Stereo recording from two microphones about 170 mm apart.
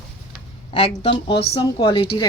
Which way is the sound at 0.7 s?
30° left (ahead or behind).